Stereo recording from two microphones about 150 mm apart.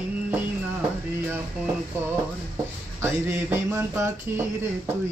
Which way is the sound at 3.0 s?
15° right (ahead or behind).